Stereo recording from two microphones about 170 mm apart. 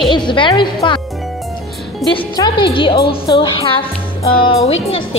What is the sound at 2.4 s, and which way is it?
A woman's voice, 30° left (ahead or behind).